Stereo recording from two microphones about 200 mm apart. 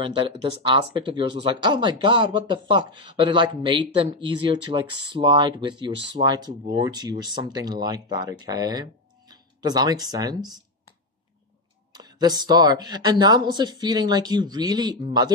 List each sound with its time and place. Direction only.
0.0 s speech: 25° right (ahead or behind)
11.9 s speech: 20° right (ahead or behind)